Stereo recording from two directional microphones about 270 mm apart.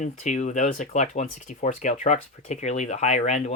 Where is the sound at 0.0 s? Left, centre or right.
Left.